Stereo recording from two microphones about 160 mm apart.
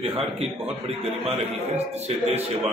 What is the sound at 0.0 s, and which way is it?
Speech, 35° right (ahead or behind).